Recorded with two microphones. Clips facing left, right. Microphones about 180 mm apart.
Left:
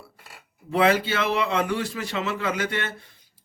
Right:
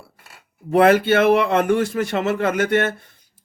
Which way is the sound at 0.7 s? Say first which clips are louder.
Right 7 dB; 55° right (ahead or behind).